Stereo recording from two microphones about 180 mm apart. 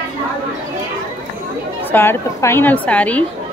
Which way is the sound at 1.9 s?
10° left (ahead or behind).